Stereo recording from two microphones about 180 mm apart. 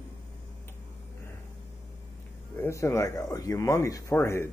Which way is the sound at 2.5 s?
15° left (ahead or behind).